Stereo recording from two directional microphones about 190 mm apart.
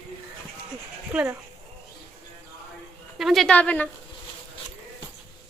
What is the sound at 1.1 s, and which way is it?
Speech, 5° right (ahead or behind).